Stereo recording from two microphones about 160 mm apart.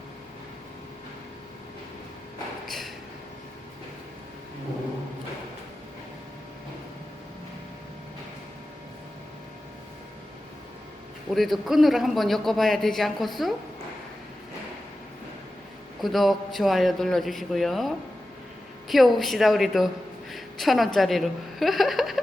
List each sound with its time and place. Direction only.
2.6 s a sound: centre (ahead or behind)
11.3 s a man's voice: centre (ahead or behind)
16.0 s a man's voice: centre (ahead or behind)